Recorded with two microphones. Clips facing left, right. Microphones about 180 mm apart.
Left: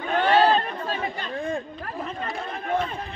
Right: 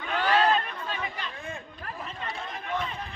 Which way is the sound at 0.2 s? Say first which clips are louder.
Left 5 dB; 30° left (ahead or behind).